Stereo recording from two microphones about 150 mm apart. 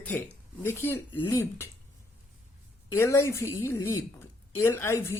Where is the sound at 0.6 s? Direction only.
15° left (ahead or behind).